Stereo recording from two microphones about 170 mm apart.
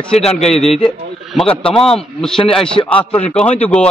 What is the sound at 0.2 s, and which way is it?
A man's voice, 40° left (ahead or behind).